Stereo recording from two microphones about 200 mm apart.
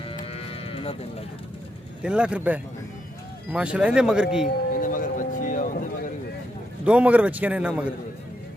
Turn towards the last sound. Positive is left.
turn(degrees=-5)  # may be behind; listen again after turning